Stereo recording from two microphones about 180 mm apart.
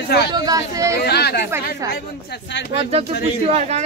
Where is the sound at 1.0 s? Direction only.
65° left (ahead or behind).